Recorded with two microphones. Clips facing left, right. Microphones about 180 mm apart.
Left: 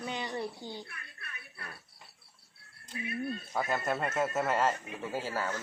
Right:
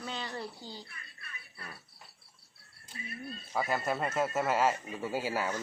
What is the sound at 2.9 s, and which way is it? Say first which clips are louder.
Speech: left 7 dB; 60° left (ahead or behind).